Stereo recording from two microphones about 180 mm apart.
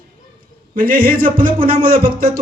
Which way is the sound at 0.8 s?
55° right (ahead or behind).